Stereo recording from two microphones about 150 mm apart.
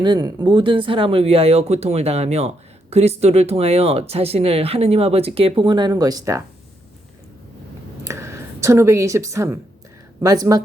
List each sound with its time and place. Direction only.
0.0 s speech: 30° right (ahead or behind)
8.0 s speech: 20° right (ahead or behind)